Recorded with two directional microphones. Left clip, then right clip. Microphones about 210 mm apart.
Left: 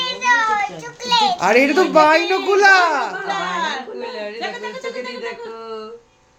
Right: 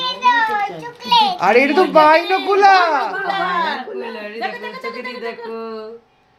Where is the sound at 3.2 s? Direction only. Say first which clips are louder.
Right 3 dB; 5° right (ahead or behind).